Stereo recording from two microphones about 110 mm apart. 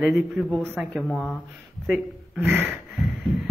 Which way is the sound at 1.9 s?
15° right (ahead or behind).